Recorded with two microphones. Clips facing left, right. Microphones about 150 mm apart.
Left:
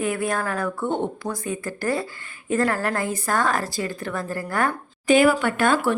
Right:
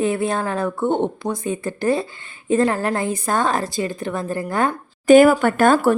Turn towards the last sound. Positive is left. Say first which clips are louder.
# right 5 dB
turn(degrees=-45)  # may be behind; listen again after turning